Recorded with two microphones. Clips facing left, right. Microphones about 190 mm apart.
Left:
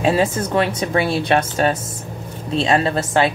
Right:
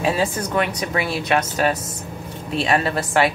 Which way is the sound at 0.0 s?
25° left (ahead or behind).